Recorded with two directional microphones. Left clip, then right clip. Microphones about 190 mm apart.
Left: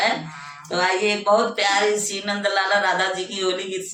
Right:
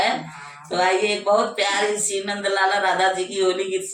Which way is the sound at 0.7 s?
20° left (ahead or behind).